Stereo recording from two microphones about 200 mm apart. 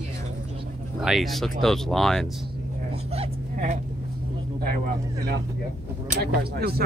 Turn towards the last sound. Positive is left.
turn(degrees=-50)  # may be behind; listen again after turning